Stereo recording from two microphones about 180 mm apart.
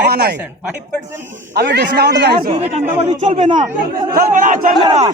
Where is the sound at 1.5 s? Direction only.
70° right (ahead or behind).